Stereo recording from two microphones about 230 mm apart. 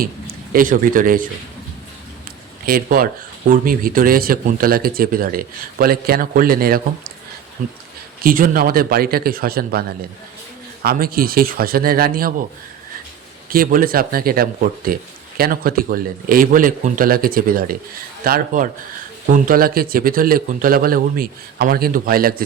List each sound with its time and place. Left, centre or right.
0.0 s speech: right
2.6 s speech: right
10.8 s speech: right
13.5 s speech: right